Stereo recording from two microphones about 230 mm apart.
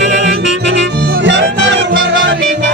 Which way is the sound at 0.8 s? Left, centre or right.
Right.